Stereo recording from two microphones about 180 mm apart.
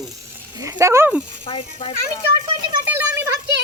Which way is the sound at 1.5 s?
30° left (ahead or behind).